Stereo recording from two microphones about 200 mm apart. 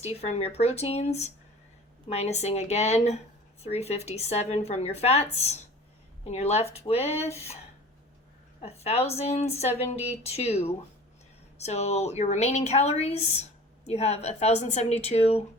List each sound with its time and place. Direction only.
0.0 s speech: 30° left (ahead or behind)
8.6 s speech: 30° left (ahead or behind)